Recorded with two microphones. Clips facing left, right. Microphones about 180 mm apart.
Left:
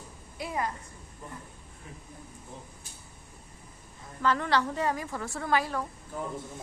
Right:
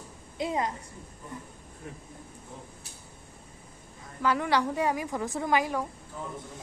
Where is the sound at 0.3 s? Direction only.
20° right (ahead or behind).